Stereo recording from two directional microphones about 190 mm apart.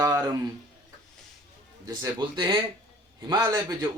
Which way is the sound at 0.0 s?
15° right (ahead or behind).